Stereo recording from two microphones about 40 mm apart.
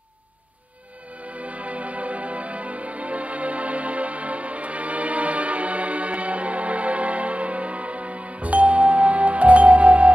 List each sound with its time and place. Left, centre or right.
1.2 s music: right